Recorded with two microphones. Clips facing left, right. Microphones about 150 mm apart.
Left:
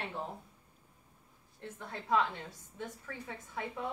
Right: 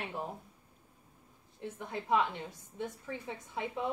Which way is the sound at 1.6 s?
15° right (ahead or behind).